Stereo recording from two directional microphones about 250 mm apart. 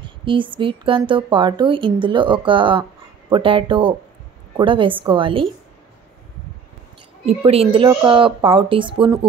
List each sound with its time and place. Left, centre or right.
0.2 s a sound: centre
0.6 s speech: centre
7.2 s speech: right